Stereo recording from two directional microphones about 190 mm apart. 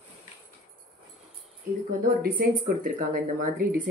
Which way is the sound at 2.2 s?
50° right (ahead or behind).